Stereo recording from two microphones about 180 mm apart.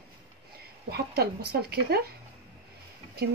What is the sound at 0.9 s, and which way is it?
A woman's voice, 65° right (ahead or behind).